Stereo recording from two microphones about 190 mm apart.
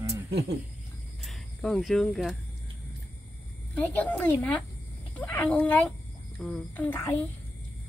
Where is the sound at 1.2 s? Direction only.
Centre (ahead or behind).